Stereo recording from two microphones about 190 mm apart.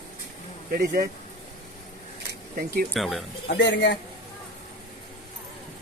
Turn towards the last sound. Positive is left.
turn(degrees=70)  # may be behind; listen again after turning